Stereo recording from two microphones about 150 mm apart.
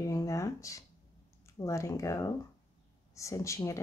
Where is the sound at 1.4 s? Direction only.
20° left (ahead or behind).